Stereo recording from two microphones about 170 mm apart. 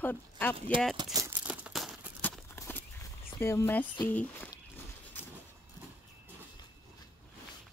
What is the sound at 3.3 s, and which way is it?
Speech, 15° left (ahead or behind).